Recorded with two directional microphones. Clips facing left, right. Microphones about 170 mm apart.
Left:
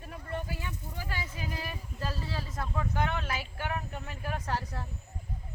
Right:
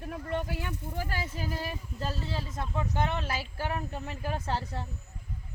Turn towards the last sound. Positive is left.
turn(degrees=-25)  # may be behind; listen again after turning